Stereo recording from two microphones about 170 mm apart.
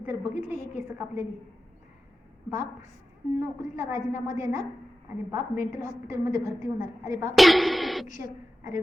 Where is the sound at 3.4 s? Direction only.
15° right (ahead or behind).